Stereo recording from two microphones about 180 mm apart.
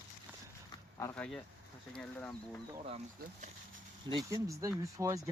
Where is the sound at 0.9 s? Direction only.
15° left (ahead or behind).